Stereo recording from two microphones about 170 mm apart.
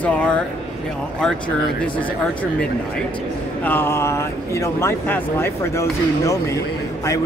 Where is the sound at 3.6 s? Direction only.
10° left (ahead or behind).